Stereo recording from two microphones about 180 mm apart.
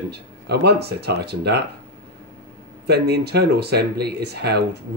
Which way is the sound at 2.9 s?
65° right (ahead or behind).